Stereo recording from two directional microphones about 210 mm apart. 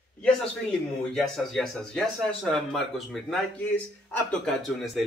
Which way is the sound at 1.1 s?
Centre (ahead or behind).